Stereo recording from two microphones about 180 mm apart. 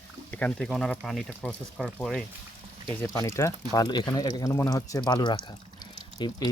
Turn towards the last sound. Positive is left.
turn(degrees=25)  # may be behind; listen again after turning